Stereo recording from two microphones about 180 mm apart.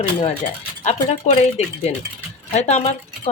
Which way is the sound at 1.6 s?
35° left (ahead or behind).